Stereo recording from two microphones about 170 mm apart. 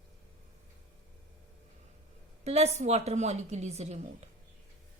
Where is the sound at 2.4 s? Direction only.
40° right (ahead or behind).